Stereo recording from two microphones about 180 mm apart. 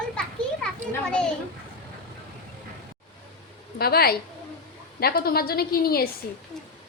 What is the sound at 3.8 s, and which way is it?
A woman's voice, 60° left (ahead or behind).